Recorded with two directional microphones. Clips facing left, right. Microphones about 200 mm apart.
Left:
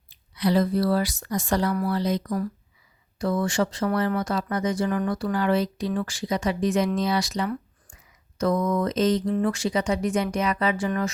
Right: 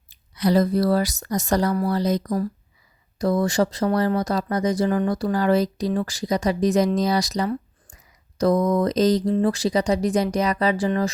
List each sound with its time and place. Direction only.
0.1 s speech: 45° right (ahead or behind)